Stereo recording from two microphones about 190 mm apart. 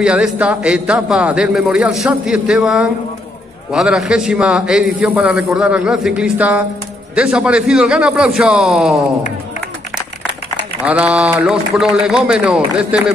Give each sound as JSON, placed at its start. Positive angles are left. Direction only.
{"t": 0.0, "sound": "a man's voice", "side_deg": -5}
{"t": 10.8, "sound": "a man's voice", "side_deg": -5}